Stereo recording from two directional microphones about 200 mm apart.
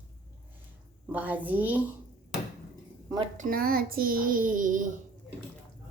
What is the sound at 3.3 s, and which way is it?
A child's voice, 45° right (ahead or behind).